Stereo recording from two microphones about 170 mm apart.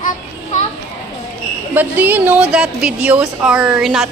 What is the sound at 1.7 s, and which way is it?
A woman's voice, 10° right (ahead or behind).